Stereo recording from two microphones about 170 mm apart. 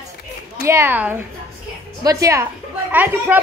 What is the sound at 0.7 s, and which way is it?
A woman's voice, 15° right (ahead or behind).